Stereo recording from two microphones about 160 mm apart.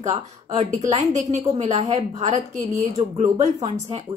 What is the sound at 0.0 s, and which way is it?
A woman's voice, 45° right (ahead or behind).